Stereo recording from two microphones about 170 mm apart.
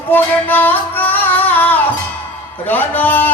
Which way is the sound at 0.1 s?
10° left (ahead or behind).